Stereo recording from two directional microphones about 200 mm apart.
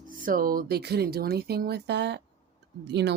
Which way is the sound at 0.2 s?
45° right (ahead or behind).